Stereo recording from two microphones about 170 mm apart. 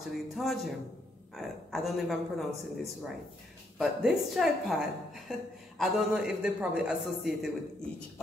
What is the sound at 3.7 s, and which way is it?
A woman's voice, centre (ahead or behind).